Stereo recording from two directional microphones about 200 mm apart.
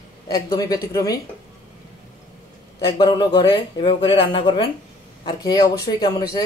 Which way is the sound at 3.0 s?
25° left (ahead or behind).